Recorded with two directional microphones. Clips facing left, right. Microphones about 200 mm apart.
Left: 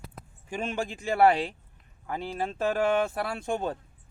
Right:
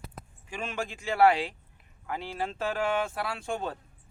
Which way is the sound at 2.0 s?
40° left (ahead or behind).